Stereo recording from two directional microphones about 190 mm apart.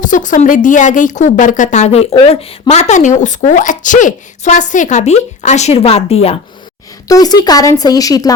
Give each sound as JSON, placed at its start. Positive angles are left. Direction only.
{"t": 0.0, "sound": "a woman's voice", "side_deg": 40}
{"t": 7.1, "sound": "a woman's voice", "side_deg": 20}